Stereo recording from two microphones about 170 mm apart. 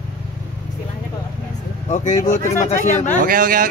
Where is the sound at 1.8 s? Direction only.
45° left (ahead or behind).